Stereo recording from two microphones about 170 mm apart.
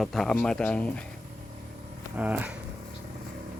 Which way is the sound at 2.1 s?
10° right (ahead or behind).